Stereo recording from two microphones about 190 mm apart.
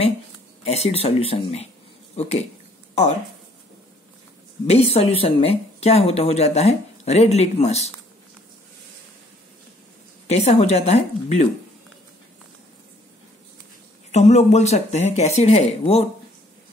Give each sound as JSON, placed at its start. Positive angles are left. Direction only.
{"t": 0.7, "sound": "speech", "side_deg": 30}
{"t": 2.9, "sound": "a sound", "side_deg": 35}
{"t": 4.6, "sound": "speech", "side_deg": 35}
{"t": 10.2, "sound": "speech", "side_deg": 35}
{"t": 14.1, "sound": "speech", "side_deg": 35}